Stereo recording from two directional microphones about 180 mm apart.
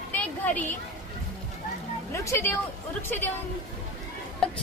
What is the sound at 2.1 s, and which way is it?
A woman's voice, 15° left (ahead or behind).